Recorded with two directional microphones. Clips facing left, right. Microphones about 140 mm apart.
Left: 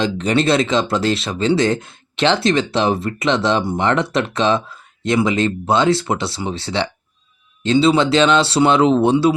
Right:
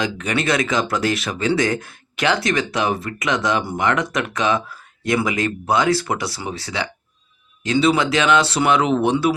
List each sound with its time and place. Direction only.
0.0 s speech: 30° left (ahead or behind)